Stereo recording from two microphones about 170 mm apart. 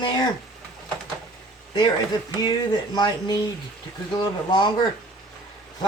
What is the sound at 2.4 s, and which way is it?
Speech, 25° left (ahead or behind).